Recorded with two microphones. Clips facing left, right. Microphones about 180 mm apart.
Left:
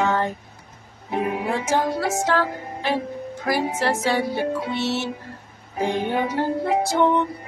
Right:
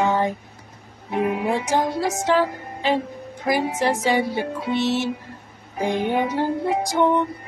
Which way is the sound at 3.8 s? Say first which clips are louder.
Right 2 dB; 15° right (ahead or behind).